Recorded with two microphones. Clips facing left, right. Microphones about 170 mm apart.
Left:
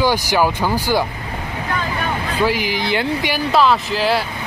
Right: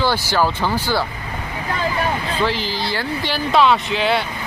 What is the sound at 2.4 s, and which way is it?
Speech, 10° left (ahead or behind).